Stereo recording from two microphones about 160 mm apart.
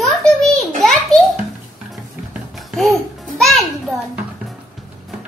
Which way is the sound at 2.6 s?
Centre (ahead or behind).